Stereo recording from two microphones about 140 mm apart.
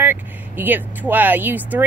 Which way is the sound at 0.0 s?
15° right (ahead or behind).